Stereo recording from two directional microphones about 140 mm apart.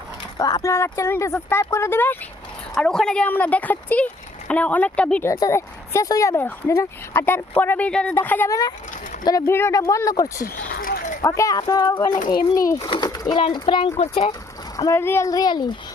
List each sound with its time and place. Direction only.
0.3 s speech: 25° left (ahead or behind)
2.7 s speech: 5° left (ahead or behind)
5.3 s speech: 20° left (ahead or behind)
10.3 s a sound: 90° left
11.2 s a child's voice: 25° left (ahead or behind)
14.0 s speech: 50° left (ahead or behind)
14.8 s speech: 20° left (ahead or behind)